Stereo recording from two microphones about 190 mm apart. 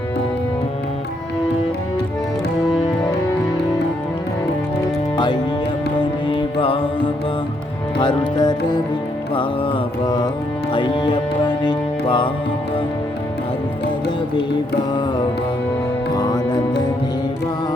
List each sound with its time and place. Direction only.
5.1 s music: 20° left (ahead or behind)
16.1 s music: 20° left (ahead or behind)